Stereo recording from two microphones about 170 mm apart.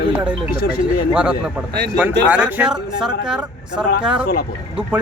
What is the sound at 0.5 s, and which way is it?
Speech, 60° left (ahead or behind).